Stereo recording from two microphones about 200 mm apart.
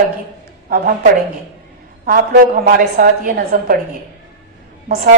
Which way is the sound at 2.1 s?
45° right (ahead or behind).